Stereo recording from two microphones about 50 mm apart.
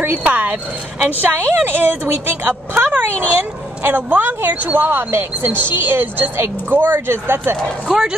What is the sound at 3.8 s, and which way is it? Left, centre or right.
A woman's voice, right.